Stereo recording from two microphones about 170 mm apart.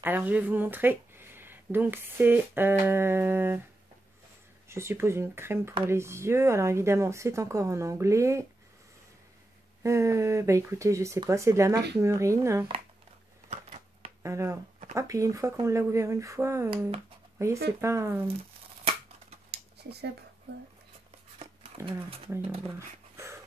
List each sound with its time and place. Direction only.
0.0 s speech: 10° right (ahead or behind)
4.6 s speech: 15° right (ahead or behind)
9.8 s speech: 15° right (ahead or behind)
13.5 s a sound: 40° right (ahead or behind)
14.2 s speech: 15° right (ahead or behind)
19.5 s a sound: 75° right (ahead or behind)
23.1 s dog: 15° right (ahead or behind)